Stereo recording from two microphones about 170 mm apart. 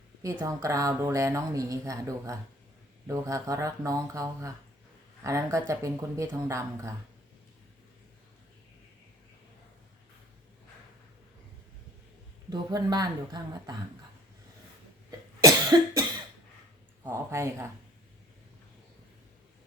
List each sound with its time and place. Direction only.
0.2 s speech: 20° right (ahead or behind)
12.5 s speech: 25° right (ahead or behind)
15.4 s cough: 20° right (ahead or behind)
17.0 s speech: 15° right (ahead or behind)